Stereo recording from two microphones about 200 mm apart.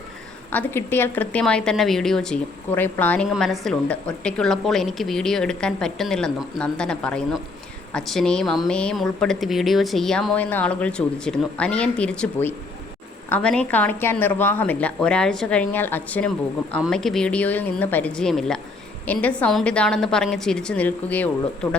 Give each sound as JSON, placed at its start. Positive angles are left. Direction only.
{"t": 0.5, "sound": "a woman's voice", "side_deg": 10}